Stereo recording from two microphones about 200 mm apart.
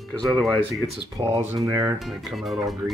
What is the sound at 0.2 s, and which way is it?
Speech, centre (ahead or behind).